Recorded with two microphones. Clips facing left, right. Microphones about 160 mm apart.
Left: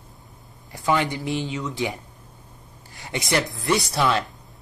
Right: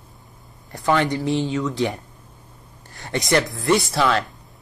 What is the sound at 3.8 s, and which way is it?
Speech, 15° left (ahead or behind).